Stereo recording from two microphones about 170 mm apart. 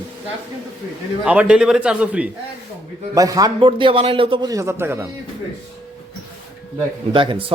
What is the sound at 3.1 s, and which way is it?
Speech, 20° right (ahead or behind).